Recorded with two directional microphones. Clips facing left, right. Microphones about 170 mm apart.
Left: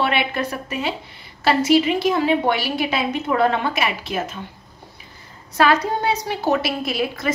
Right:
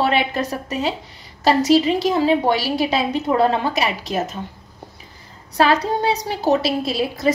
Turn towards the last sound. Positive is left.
turn(degrees=-35)  # may be behind; listen again after turning